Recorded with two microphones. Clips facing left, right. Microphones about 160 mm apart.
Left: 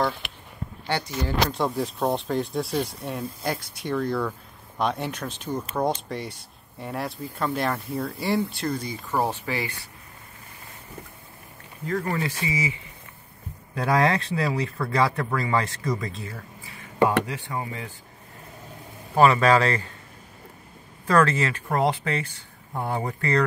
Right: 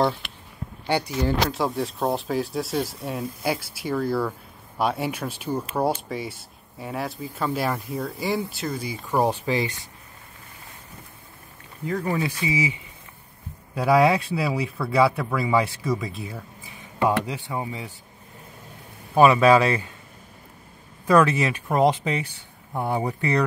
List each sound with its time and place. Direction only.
0.8 s speech: 10° right (ahead or behind)
1.5 s speech: centre (ahead or behind)
9.0 s speech: 15° right (ahead or behind)
11.8 s speech: 10° right (ahead or behind)
13.7 s speech: 10° right (ahead or behind)
19.1 s speech: 10° right (ahead or behind)
21.1 s speech: 15° right (ahead or behind)